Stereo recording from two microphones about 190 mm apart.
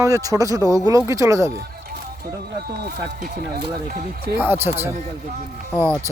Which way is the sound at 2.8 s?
50° right (ahead or behind).